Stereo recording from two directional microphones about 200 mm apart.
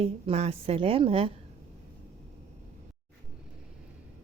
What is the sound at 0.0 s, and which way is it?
A woman's voice, 30° right (ahead or behind).